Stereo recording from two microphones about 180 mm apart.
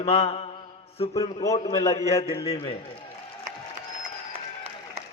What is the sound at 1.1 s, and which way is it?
A man's voice, 20° left (ahead or behind).